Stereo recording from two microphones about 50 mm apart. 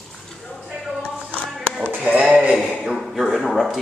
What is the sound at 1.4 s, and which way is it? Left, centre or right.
Music, centre.